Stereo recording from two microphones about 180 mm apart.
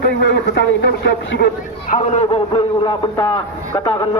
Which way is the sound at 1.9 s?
35° left (ahead or behind).